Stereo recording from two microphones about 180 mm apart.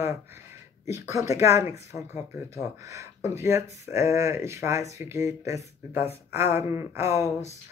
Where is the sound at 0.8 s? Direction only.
15° right (ahead or behind).